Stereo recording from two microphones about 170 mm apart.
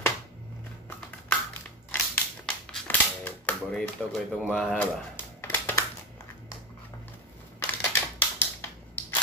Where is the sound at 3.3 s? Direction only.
10° left (ahead or behind).